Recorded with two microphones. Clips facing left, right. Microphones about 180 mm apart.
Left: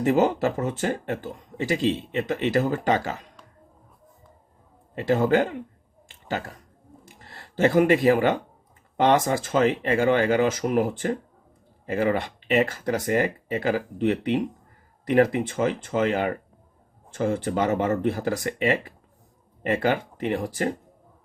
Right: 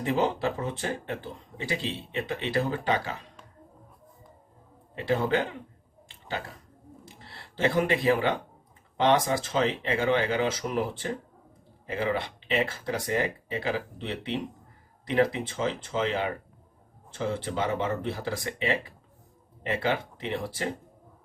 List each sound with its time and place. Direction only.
0.0 s speech: 45° left (ahead or behind)
4.9 s speech: 45° left (ahead or behind)
7.2 s speech: 45° left (ahead or behind)